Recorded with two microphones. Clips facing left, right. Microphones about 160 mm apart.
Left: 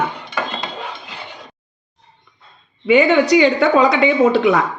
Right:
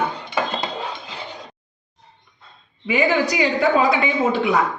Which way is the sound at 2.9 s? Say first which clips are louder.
Left 7 dB; 75° left (ahead or behind).